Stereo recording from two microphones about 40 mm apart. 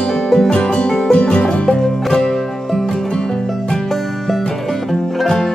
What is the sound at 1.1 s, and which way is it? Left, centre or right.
Music, left.